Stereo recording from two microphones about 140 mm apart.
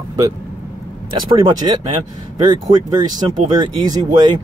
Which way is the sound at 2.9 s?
30° right (ahead or behind).